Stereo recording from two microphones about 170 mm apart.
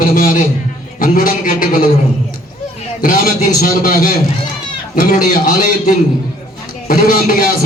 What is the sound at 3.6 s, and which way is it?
A man's voice, 50° left (ahead or behind).